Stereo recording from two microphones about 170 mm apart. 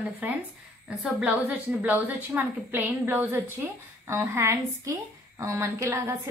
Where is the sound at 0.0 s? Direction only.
10° right (ahead or behind).